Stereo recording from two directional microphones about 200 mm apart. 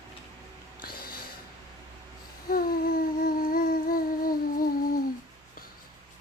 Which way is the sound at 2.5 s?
45° left (ahead or behind).